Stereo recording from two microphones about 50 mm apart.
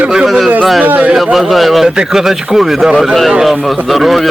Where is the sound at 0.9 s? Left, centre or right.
Right.